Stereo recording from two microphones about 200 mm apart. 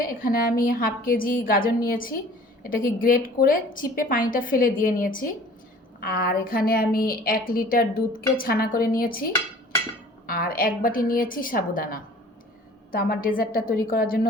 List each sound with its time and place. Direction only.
0.0 s a woman's voice: 45° left (ahead or behind)
10.2 s a woman's voice: 45° left (ahead or behind)